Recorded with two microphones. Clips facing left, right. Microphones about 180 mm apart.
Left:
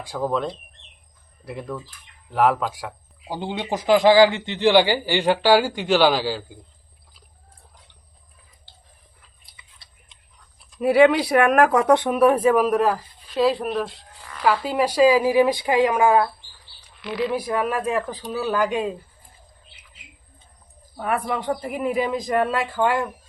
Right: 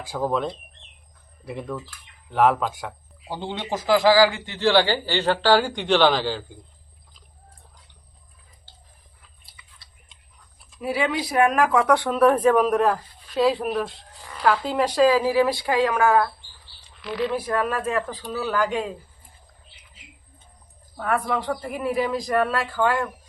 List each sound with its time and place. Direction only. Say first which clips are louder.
0.0 s speech: even; centre (ahead or behind)
3.2 s a man's voice: left 2 dB; 15° left (ahead or behind)
10.8 s speech: left 9 dB; 60° left (ahead or behind)
11.9 s a man's voice: left 2 dB; 20° left (ahead or behind)
17.0 s a man's voice: left 1 dB; 5° left (ahead or behind)
20.9 s a man's voice: even; 15° left (ahead or behind)